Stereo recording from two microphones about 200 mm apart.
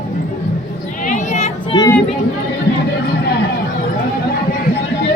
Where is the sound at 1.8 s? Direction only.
10° left (ahead or behind).